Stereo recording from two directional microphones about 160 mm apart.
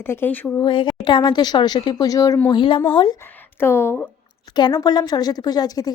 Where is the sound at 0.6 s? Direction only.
30° left (ahead or behind).